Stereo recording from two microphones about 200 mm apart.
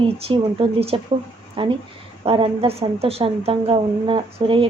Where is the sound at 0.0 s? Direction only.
25° right (ahead or behind).